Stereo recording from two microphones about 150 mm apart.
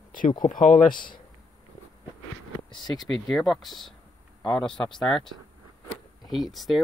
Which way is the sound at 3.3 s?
Centre (ahead or behind).